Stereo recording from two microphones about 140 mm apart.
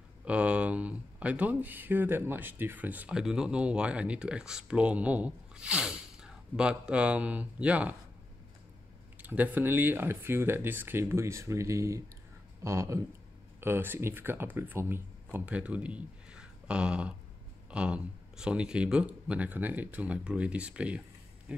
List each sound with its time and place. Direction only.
0.2 s speech: 10° right (ahead or behind)
9.2 s speech: 10° right (ahead or behind)